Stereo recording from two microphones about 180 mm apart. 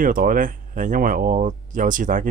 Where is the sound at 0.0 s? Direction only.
50° right (ahead or behind).